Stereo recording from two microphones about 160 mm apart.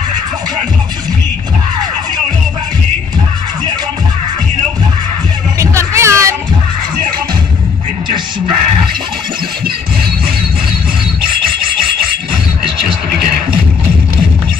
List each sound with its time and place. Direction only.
5.6 s music: 20° right (ahead or behind)